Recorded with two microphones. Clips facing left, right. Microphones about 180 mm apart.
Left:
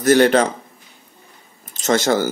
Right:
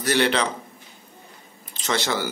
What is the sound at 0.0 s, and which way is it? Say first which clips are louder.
Speech: left 8 dB; 45° left (ahead or behind).